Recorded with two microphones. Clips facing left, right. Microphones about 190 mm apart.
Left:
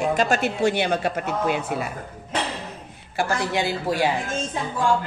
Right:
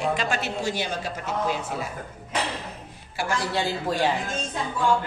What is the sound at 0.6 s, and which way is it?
Speech, 60° left (ahead or behind).